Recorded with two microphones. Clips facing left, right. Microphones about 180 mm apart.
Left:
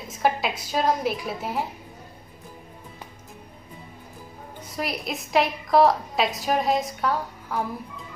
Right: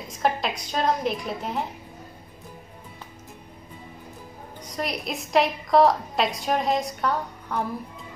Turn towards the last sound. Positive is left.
turn(degrees=0)  # may be behind; listen again after turning